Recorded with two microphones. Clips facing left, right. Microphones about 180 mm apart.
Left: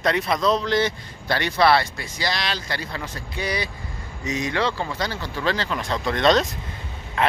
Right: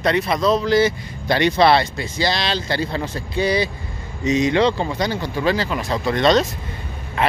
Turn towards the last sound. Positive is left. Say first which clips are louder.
# right 2 dB
turn(degrees=0)  # may be behind; listen again after turning